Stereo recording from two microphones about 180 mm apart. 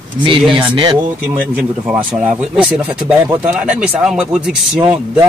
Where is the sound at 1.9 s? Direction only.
5° right (ahead or behind).